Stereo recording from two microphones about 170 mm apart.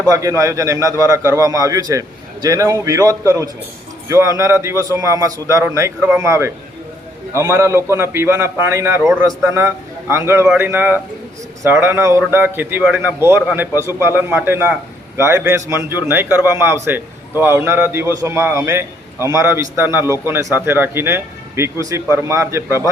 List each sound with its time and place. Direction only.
0.1 s a man's voice: 20° right (ahead or behind)
13.7 s a man's voice: 15° right (ahead or behind)